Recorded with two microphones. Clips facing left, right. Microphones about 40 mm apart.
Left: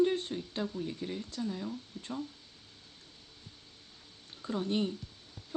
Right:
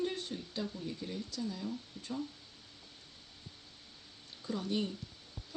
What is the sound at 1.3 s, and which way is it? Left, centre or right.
Speech, left.